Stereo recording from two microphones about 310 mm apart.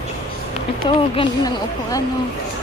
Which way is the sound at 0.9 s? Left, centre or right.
Centre.